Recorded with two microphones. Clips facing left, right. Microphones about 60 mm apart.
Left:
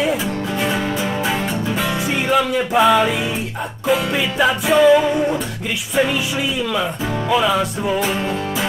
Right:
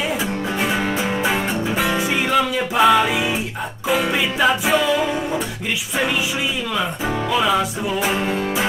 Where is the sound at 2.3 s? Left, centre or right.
Centre.